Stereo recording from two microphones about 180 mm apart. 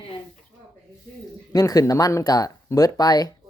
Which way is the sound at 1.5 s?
20° left (ahead or behind).